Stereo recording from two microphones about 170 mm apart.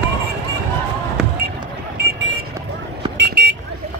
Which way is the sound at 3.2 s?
80° right.